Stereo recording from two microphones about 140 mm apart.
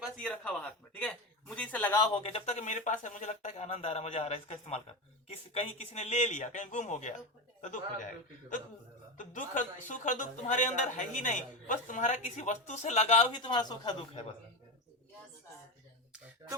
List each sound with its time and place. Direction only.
0.2 s a man's voice: 10° left (ahead or behind)
2.2 s a man's voice: 50° left (ahead or behind); by 14.2 s 30° left (ahead or behind)